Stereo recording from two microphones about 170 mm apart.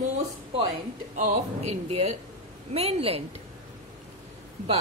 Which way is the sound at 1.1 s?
45° right (ahead or behind).